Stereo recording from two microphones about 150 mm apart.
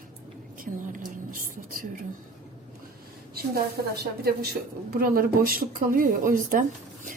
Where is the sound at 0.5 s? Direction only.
65° right (ahead or behind).